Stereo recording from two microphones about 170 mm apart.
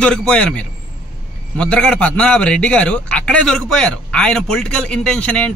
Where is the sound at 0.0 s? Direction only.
5° left (ahead or behind).